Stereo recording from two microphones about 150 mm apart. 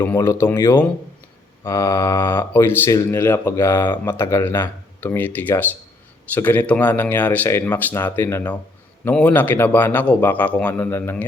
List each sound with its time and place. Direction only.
0.0 s speech: 15° left (ahead or behind)